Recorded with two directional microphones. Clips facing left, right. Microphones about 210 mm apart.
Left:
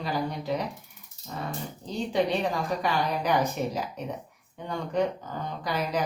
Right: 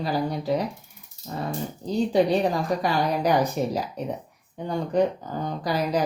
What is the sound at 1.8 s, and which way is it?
Speech, 35° right (ahead or behind).